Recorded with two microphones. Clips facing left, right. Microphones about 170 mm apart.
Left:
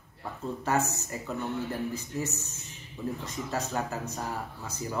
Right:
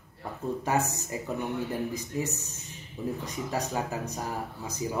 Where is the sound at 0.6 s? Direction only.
15° right (ahead or behind).